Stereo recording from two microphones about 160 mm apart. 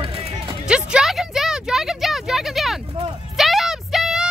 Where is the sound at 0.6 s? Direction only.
5° right (ahead or behind).